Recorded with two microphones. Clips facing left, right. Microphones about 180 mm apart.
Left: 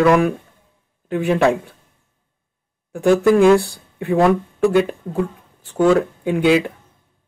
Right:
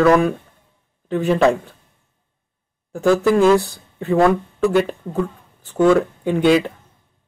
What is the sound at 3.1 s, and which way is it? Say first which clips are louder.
Speech: left 2 dB; 15° left (ahead or behind).